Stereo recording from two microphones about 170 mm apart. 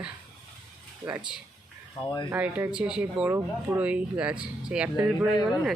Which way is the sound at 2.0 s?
25° left (ahead or behind).